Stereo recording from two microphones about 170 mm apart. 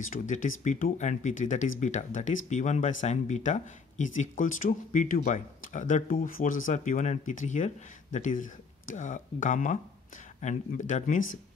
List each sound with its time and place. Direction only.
0.1 s speech: 50° left (ahead or behind)